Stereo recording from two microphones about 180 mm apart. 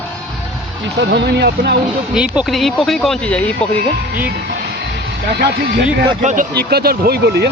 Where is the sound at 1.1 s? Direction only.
70° right (ahead or behind).